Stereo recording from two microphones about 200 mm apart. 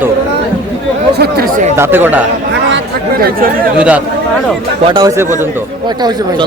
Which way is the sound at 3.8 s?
5° right (ahead or behind).